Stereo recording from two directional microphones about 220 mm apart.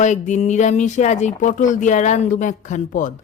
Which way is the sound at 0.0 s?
35° left (ahead or behind).